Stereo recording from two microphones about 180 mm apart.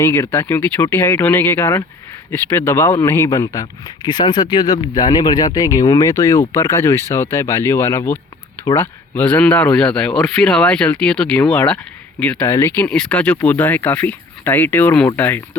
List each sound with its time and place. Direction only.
0.0 s speech: 15° left (ahead or behind)